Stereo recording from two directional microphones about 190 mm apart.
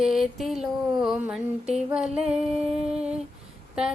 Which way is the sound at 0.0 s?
Centre (ahead or behind).